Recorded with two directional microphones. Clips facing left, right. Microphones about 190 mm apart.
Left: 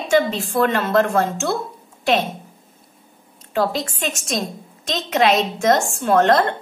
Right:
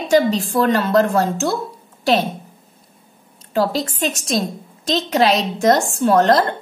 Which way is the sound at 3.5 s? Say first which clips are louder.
Right 2 dB; 35° right (ahead or behind).